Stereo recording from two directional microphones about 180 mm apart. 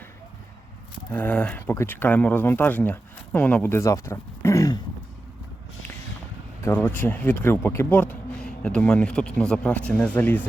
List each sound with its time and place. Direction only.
1.1 s speech: 10° left (ahead or behind)
6.6 s speech: 10° left (ahead or behind)